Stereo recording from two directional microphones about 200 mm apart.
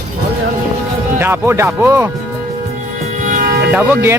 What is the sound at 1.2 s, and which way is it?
Speech, 10° right (ahead or behind).